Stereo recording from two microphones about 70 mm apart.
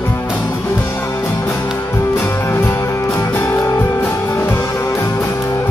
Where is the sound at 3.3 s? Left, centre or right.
Left.